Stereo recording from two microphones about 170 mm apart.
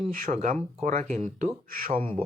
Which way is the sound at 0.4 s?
45° right (ahead or behind).